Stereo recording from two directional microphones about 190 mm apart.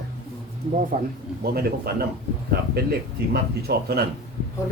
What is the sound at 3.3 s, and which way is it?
Speech, 55° right (ahead or behind).